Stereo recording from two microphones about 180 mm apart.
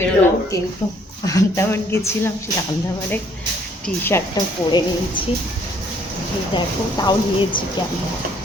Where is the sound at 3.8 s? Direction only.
10° left (ahead or behind).